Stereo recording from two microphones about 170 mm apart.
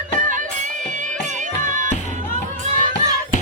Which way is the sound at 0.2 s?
50° right (ahead or behind).